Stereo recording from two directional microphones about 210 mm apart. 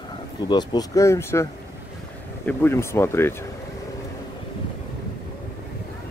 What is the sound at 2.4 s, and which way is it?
Speech, 10° left (ahead or behind).